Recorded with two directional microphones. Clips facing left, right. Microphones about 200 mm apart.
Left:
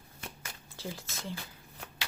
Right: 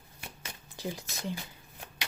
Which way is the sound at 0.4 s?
20° right (ahead or behind).